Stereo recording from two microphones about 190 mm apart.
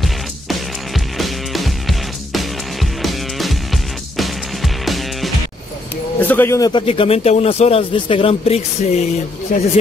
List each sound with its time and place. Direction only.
0.0 s music: centre (ahead or behind)
6.1 s a man's voice: 10° left (ahead or behind); by 9.0 s 35° left (ahead or behind)
9.5 s speech: 45° left (ahead or behind)